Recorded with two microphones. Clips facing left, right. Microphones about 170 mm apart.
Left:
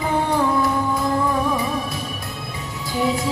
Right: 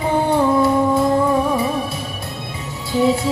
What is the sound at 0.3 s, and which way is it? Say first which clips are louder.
Music: right 6 dB; 25° right (ahead or behind).